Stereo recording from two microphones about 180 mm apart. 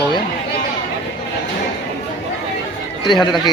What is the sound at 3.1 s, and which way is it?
Speech, 25° left (ahead or behind).